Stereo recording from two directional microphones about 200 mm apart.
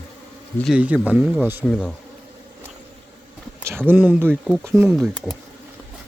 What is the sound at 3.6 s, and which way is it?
Speech, 10° right (ahead or behind).